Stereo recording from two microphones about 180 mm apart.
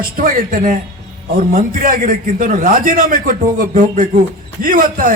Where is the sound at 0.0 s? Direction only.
50° right (ahead or behind).